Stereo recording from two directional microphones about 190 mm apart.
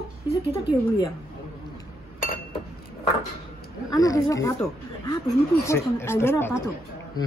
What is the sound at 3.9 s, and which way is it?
Speech, 20° left (ahead or behind).